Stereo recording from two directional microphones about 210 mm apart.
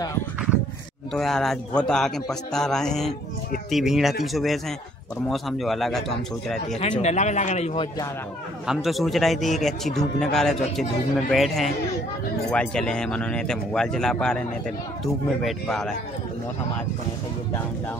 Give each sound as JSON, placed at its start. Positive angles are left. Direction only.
{"t": 1.1, "sound": "speech", "side_deg": 0}
{"t": 6.8, "sound": "a man's voice", "side_deg": 30}
{"t": 8.6, "sound": "speech", "side_deg": 0}
{"t": 15.4, "sound": "speech", "side_deg": 0}